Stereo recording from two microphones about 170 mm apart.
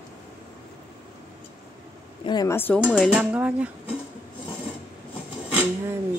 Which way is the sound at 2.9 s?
Centre (ahead or behind).